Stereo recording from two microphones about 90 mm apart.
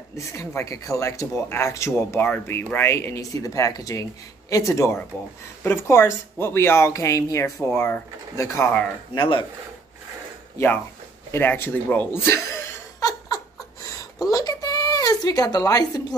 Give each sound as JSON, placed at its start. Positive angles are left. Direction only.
{"t": 0.1, "sound": "speech", "side_deg": 35}
{"t": 9.1, "sound": "speech", "side_deg": 55}
{"t": 11.3, "sound": "speech", "side_deg": 25}
{"t": 13.0, "sound": "laughter", "side_deg": 45}
{"t": 14.2, "sound": "a sound", "side_deg": 45}